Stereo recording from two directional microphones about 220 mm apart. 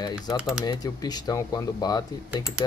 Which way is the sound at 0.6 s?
20° left (ahead or behind).